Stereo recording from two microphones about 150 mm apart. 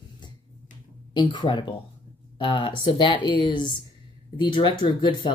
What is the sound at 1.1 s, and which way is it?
Speech, 30° left (ahead or behind).